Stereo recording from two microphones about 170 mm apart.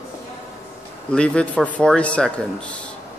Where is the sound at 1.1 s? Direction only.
5° left (ahead or behind).